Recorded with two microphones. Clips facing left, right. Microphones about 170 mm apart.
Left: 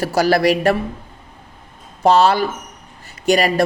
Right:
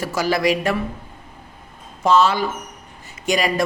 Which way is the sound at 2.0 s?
65° left (ahead or behind).